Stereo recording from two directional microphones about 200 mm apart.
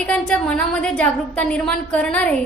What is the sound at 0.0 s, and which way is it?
A woman's voice, 5° left (ahead or behind).